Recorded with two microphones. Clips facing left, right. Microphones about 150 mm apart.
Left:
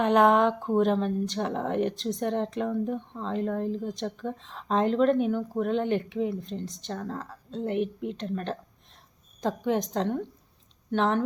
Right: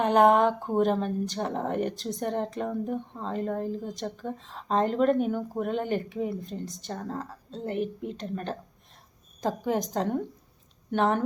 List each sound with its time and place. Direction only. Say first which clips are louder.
0.0 s speech: even; centre (ahead or behind)